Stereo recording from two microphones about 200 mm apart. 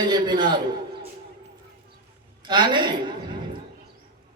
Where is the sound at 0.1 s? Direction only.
20° right (ahead or behind).